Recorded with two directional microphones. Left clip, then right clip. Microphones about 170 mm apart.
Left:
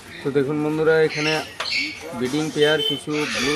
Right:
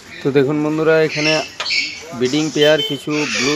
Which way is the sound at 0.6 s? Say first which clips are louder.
Right 4 dB; 15° right (ahead or behind).